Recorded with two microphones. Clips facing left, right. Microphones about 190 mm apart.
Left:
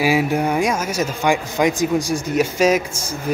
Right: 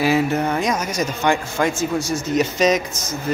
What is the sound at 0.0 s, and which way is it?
Speech, 10° left (ahead or behind).